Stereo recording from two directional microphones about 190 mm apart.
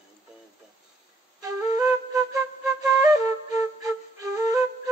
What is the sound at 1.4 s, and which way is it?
Flute, 20° right (ahead or behind).